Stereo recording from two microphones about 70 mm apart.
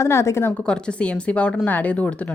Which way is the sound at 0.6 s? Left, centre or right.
Centre.